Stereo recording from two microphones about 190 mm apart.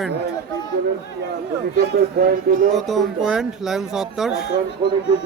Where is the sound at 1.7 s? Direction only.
50° right (ahead or behind).